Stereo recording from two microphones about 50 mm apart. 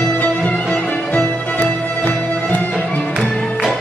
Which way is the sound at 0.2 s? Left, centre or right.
Left.